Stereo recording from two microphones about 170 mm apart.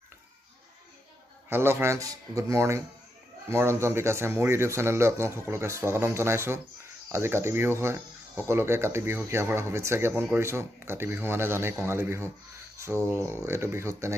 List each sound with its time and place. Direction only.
1.5 s speech: 15° right (ahead or behind)
13.5 s speech: 15° right (ahead or behind)